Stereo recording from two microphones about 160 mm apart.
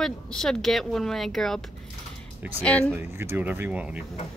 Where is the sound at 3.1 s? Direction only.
15° right (ahead or behind).